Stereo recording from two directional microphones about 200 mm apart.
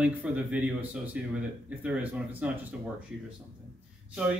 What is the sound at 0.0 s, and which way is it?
Speech, 5° right (ahead or behind).